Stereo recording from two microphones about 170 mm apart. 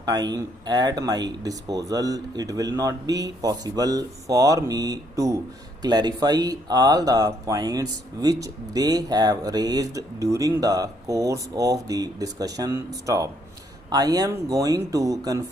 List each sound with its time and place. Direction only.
0.0 s speech: 20° right (ahead or behind)